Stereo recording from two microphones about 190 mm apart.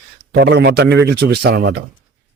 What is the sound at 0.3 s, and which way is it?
Speech, 60° right (ahead or behind).